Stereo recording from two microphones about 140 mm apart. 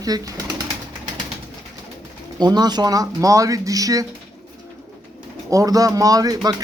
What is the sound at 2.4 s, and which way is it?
Speech, 30° right (ahead or behind).